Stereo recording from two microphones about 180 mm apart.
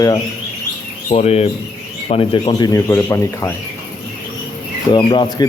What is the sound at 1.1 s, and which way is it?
A man's voice, 35° left (ahead or behind).